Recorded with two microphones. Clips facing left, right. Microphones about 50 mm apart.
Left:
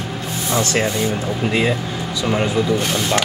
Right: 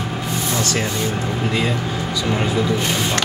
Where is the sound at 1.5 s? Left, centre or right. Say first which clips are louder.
Left 2 dB; centre.